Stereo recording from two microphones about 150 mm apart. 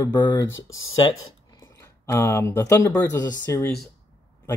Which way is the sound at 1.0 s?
30° left (ahead or behind).